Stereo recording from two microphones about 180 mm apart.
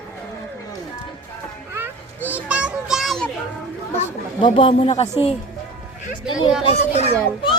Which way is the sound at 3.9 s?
30° left (ahead or behind).